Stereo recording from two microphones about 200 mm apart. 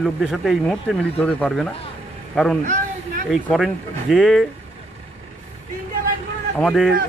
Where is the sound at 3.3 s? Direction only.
Centre (ahead or behind).